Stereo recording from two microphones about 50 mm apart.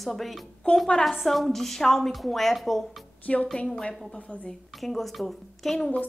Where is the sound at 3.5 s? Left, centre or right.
Centre.